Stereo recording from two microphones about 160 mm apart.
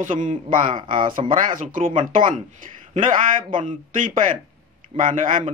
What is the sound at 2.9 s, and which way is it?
Speech, 55° right (ahead or behind).